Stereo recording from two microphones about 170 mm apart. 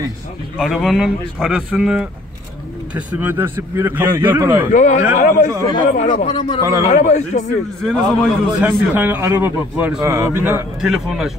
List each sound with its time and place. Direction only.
0.6 s speech: centre (ahead or behind)
4.7 s a man's voice: 45° left (ahead or behind)
5.6 s speech: 25° left (ahead or behind)
5.9 s a man's voice: 50° left (ahead or behind)
6.2 s speech: 30° left (ahead or behind)
6.9 s a man's voice: 45° left (ahead or behind)
7.8 s speech: 5° left (ahead or behind)
8.6 s speech: 10° right (ahead or behind)
10.8 s speech: centre (ahead or behind)